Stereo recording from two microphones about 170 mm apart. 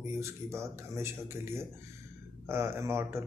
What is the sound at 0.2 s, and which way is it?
Speech, 15° right (ahead or behind).